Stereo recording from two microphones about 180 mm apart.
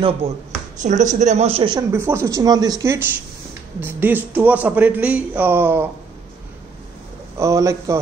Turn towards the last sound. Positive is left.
turn(degrees=-15)  # may be behind; listen again after turning